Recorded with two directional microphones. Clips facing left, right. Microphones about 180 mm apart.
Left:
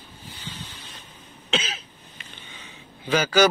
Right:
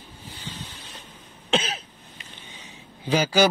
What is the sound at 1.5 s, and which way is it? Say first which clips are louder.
Cough: right 3 dB; 55° right (ahead or behind).